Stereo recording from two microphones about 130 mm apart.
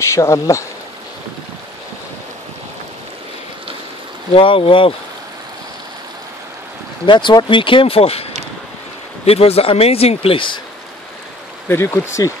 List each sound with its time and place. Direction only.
0.0 s speech: 20° left (ahead or behind)
4.3 s speech: 45° left (ahead or behind)
7.1 s speech: 35° left (ahead or behind)
11.7 s speech: 20° left (ahead or behind)